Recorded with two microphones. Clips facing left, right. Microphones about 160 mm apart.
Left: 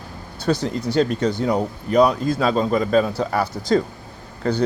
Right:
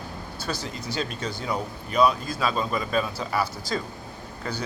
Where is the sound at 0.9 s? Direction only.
65° left (ahead or behind).